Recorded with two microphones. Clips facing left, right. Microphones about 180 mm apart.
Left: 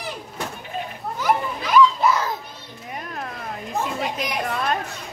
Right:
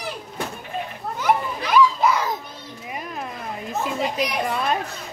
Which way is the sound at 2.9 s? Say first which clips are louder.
Even; 5° right (ahead or behind).